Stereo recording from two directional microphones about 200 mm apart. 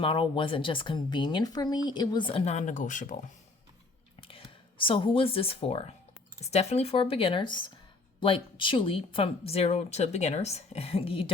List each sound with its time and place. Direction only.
0.0 s speech: 25° left (ahead or behind)
4.2 s speech: 25° left (ahead or behind)